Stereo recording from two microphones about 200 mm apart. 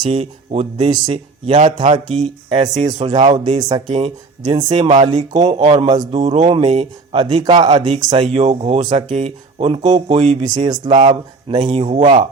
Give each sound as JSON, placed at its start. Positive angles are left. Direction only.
{"t": 0.0, "sound": "speech", "side_deg": -30}
{"t": 3.8, "sound": "speech", "side_deg": -35}
{"t": 4.4, "sound": "speech", "side_deg": -25}
{"t": 6.0, "sound": "speech", "side_deg": -35}
{"t": 6.5, "sound": "speech", "side_deg": -25}
{"t": 10.4, "sound": "speech", "side_deg": -20}